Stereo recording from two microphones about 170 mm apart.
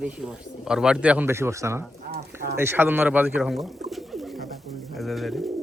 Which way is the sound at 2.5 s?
15° right (ahead or behind).